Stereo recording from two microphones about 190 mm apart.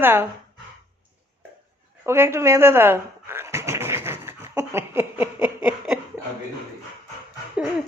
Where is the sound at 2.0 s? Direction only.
15° right (ahead or behind).